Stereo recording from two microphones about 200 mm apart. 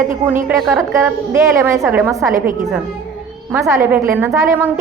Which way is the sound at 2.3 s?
40° right (ahead or behind).